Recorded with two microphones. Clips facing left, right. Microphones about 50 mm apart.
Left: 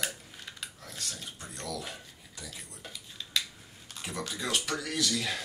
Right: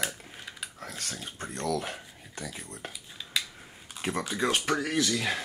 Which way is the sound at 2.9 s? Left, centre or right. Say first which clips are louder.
Even; centre.